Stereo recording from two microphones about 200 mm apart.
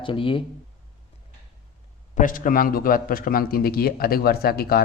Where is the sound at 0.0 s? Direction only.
25° left (ahead or behind).